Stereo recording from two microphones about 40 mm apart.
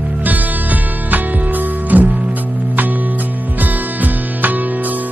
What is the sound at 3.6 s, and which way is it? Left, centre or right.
Music, right.